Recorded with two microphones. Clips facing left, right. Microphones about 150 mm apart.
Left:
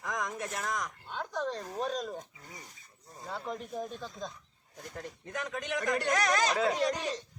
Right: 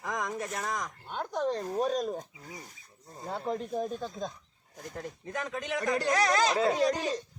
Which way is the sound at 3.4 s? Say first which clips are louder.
Right 7 dB; 35° right (ahead or behind).